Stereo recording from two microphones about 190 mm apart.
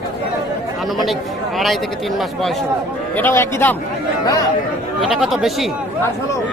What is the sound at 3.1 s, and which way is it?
Speech, 10° left (ahead or behind).